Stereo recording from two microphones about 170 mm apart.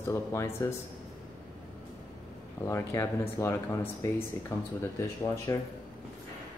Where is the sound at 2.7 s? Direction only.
15° left (ahead or behind).